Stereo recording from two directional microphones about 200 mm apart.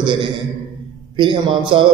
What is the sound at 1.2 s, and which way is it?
Mantra, 25° right (ahead or behind).